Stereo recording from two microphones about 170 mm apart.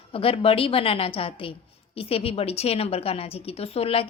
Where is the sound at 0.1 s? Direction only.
35° left (ahead or behind).